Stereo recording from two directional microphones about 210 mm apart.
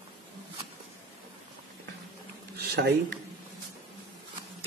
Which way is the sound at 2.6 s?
50° right (ahead or behind).